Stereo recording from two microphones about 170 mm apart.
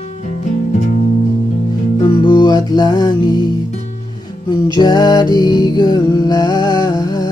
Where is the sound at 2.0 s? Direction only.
25° left (ahead or behind).